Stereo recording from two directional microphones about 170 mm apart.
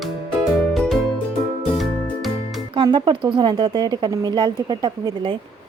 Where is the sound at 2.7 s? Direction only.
30° right (ahead or behind).